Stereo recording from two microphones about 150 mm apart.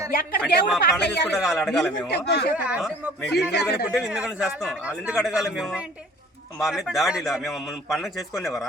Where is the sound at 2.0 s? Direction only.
90° left.